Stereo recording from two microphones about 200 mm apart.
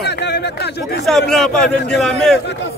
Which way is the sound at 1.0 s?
Centre (ahead or behind).